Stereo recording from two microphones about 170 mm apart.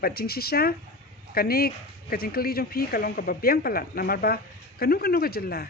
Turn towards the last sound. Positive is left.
turn(degrees=65)  # may be behind; listen again after turning